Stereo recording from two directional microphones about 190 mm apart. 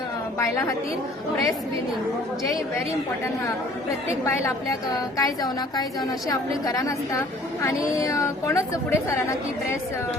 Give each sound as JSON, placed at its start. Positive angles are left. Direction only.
{"t": 5.1, "sound": "a woman's voice", "side_deg": 20}